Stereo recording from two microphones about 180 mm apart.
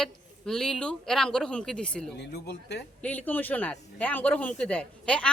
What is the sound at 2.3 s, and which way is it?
Speech, 65° left (ahead or behind).